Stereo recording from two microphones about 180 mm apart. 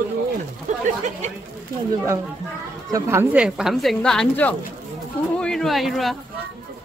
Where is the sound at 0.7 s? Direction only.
45° right (ahead or behind).